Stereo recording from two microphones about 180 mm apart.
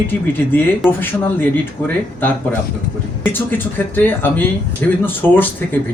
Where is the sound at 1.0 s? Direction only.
10° left (ahead or behind).